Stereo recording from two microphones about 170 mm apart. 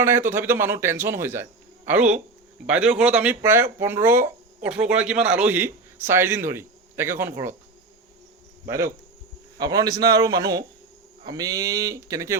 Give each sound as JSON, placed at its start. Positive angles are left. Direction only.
{"t": 0.0, "sound": "speech", "side_deg": -15}
{"t": 8.6, "sound": "speech", "side_deg": -15}